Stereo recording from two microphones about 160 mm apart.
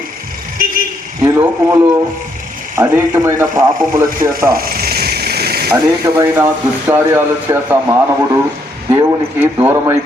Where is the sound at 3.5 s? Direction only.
60° right (ahead or behind).